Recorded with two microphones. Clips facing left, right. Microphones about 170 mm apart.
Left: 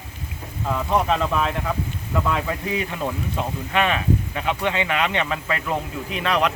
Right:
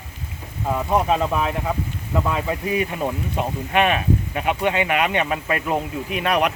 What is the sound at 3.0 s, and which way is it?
Speech, 20° right (ahead or behind).